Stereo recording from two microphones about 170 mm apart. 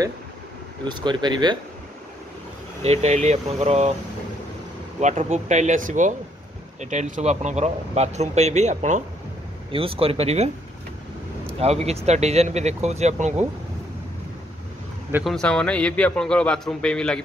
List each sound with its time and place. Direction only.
0.8 s speech: 25° right (ahead or behind)
2.8 s speech: 40° right (ahead or behind)
5.0 s speech: 45° right (ahead or behind)
9.7 s speech: 30° right (ahead or behind)
11.6 s speech: 40° right (ahead or behind)
15.2 s a man's voice: 5° left (ahead or behind)